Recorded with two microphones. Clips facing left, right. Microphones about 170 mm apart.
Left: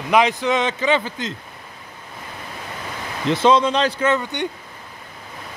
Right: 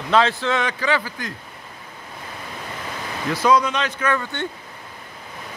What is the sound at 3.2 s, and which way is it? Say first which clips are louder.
Speech: left 3 dB; 25° left (ahead or behind).